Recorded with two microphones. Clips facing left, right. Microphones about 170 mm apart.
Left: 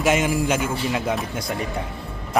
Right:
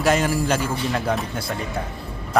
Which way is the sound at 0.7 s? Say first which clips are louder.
Even; 5° left (ahead or behind).